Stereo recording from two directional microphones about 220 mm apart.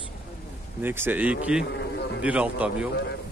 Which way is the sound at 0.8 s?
10° right (ahead or behind).